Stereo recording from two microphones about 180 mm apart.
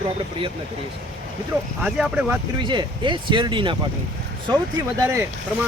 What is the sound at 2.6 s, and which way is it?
Speech, 25° right (ahead or behind).